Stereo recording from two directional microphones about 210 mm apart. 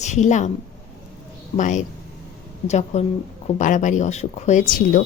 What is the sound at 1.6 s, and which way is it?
A woman's voice, 35° left (ahead or behind).